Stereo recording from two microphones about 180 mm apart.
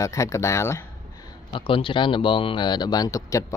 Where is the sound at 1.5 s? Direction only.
30° left (ahead or behind).